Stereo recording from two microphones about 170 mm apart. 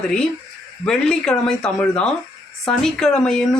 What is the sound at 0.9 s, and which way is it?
Speech, 5° left (ahead or behind).